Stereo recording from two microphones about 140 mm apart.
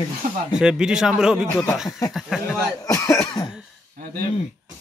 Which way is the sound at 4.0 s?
90° right.